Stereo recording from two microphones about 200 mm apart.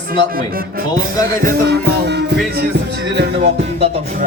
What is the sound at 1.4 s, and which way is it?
Music, 55° right (ahead or behind).